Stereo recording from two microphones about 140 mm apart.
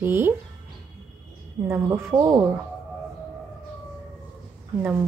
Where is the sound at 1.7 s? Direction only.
20° right (ahead or behind).